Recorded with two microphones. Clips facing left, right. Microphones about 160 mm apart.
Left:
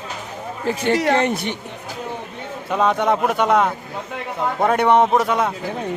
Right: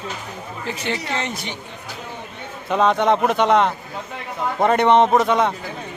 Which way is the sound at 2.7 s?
5° left (ahead or behind).